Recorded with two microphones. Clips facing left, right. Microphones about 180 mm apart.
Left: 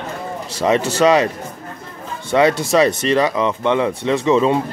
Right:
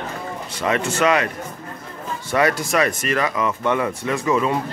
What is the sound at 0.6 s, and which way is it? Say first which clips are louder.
Speech: left 5 dB; 30° left (ahead or behind).